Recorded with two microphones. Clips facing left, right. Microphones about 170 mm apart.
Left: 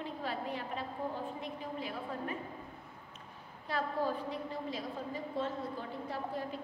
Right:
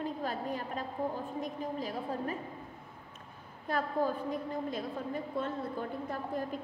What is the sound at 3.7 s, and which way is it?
A woman's voice, 50° right (ahead or behind).